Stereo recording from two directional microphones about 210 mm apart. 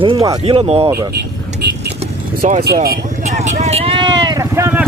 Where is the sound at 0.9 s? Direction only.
15° right (ahead or behind).